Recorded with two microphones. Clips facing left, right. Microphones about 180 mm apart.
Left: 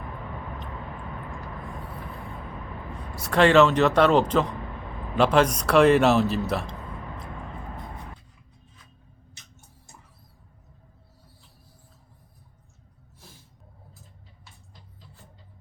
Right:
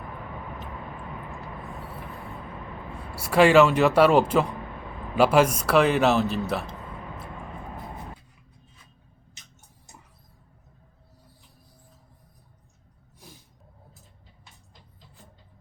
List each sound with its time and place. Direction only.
2.9 s a man's voice: 10° right (ahead or behind)